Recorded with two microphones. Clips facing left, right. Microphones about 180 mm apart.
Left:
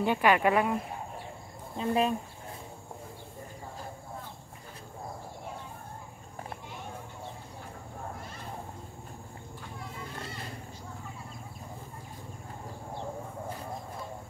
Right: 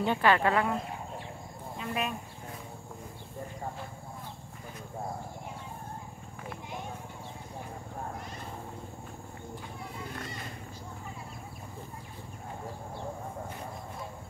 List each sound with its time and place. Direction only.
0.0 s speech: 10° left (ahead or behind)
1.8 s speech: 30° left (ahead or behind)